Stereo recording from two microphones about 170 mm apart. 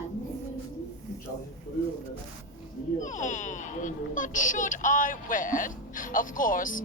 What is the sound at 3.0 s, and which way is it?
Speech, 50° left (ahead or behind).